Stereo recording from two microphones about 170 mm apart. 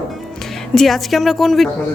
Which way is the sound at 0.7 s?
Centre (ahead or behind).